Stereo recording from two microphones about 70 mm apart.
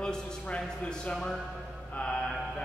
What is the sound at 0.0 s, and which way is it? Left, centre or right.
A man's voice, centre.